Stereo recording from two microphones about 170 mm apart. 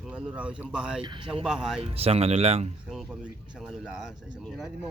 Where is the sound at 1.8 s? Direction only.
35° right (ahead or behind).